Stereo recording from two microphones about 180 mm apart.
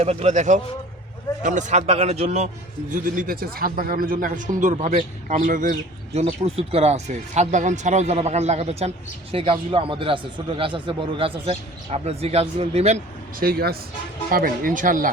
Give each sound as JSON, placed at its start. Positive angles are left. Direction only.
{"t": 0.0, "sound": "speech", "side_deg": -35}
{"t": 2.9, "sound": "speech", "side_deg": -50}
{"t": 6.1, "sound": "speech", "side_deg": -35}
{"t": 13.4, "sound": "speech", "side_deg": -55}